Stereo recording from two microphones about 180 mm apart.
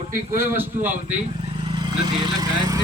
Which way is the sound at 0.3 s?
10° right (ahead or behind).